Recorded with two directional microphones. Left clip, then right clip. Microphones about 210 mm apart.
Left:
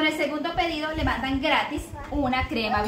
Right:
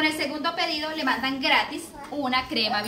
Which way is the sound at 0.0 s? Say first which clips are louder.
Even; 10° left (ahead or behind).